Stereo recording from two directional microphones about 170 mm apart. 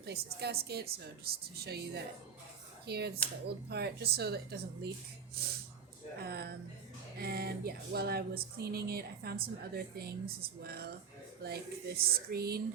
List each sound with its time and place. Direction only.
0.0 s speech: 70° right (ahead or behind)